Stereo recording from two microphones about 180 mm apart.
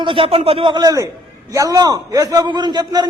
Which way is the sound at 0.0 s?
30° right (ahead or behind).